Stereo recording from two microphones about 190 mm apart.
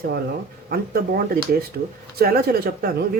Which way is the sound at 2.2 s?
55° right (ahead or behind).